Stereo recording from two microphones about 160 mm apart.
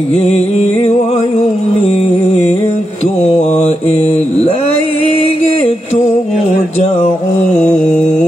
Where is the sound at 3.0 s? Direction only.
45° left (ahead or behind).